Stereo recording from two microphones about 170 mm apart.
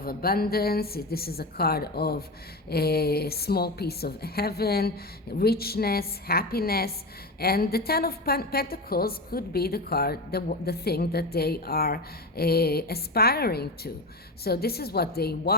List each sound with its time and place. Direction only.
0.0 s a woman's voice: 60° left (ahead or behind)